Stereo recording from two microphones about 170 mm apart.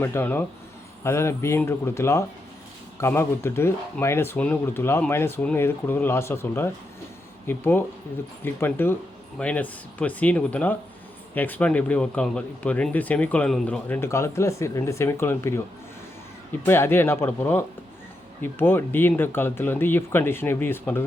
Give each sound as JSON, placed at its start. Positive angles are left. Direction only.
{"t": 0.0, "sound": "speech", "side_deg": 15}